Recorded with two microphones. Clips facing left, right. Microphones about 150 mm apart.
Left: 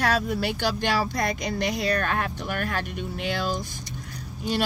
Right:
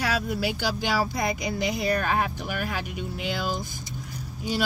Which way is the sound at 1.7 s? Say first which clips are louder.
Even; 90° left.